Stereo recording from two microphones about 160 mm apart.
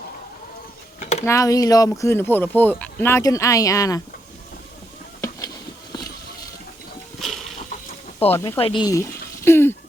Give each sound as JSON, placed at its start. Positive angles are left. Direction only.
{"t": 1.2, "sound": "speech", "side_deg": 20}
{"t": 7.2, "sound": "a sound", "side_deg": 0}
{"t": 8.2, "sound": "speech", "side_deg": 40}
{"t": 8.9, "sound": "speech", "side_deg": 15}